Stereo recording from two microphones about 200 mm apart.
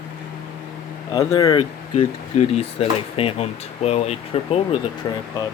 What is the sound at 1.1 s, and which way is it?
Speech, 20° left (ahead or behind).